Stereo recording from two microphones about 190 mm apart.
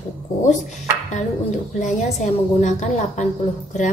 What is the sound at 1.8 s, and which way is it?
A woman's voice, 40° left (ahead or behind).